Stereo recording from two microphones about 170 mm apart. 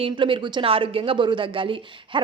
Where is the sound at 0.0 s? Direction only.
30° right (ahead or behind).